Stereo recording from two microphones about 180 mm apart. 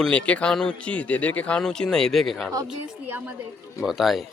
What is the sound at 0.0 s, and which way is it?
Speech, 5° left (ahead or behind).